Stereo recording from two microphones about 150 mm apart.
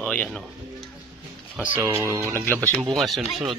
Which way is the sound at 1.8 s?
20° right (ahead or behind).